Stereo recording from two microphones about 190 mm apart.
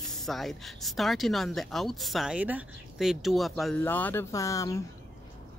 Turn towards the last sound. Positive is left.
turn(degrees=15)  # may be behind; listen again after turning